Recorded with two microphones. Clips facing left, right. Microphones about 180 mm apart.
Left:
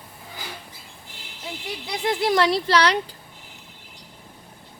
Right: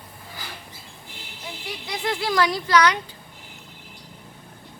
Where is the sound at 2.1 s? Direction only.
25° left (ahead or behind).